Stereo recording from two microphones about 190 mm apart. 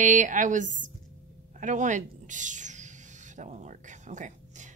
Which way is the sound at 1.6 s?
40° right (ahead or behind).